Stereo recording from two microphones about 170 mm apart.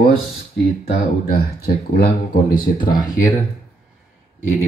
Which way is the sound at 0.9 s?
65° left (ahead or behind).